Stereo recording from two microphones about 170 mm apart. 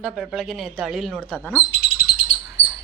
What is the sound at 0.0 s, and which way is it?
Speech, centre (ahead or behind).